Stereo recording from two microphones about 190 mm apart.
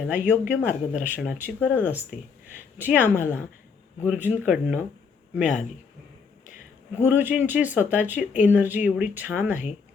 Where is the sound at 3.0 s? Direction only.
10° left (ahead or behind).